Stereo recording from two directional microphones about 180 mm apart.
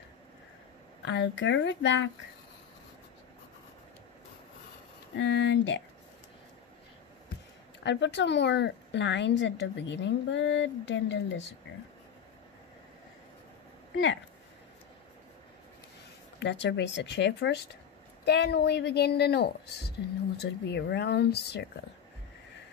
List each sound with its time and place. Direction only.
1.0 s speech: 80° left
5.1 s speech: 90° left
7.8 s speech: 80° left
16.3 s a woman's voice: 80° left